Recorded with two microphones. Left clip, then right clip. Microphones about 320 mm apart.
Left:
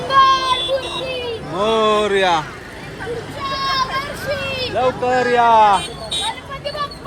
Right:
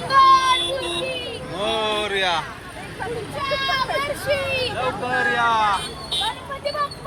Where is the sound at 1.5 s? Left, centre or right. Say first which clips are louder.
Left 7 dB; centre.